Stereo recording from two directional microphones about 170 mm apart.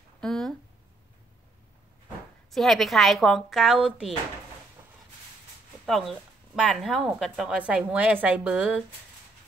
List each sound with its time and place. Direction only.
0.2 s speech: centre (ahead or behind)
2.5 s speech: centre (ahead or behind)
4.8 s a sound: 15° right (ahead or behind)
5.9 s a woman's voice: centre (ahead or behind)